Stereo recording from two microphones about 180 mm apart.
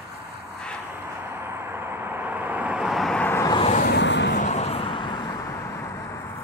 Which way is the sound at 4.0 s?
75° left (ahead or behind).